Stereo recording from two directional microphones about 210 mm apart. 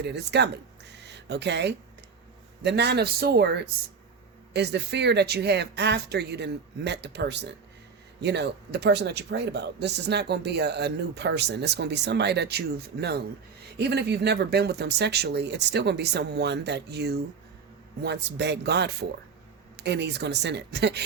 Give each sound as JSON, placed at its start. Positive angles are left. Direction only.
{"t": 0.0, "sound": "a man's voice", "side_deg": -55}